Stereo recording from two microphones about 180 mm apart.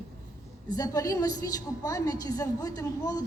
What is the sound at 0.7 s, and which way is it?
A woman's voice, 20° left (ahead or behind).